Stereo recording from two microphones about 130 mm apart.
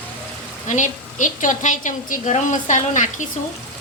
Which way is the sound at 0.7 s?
75° left (ahead or behind).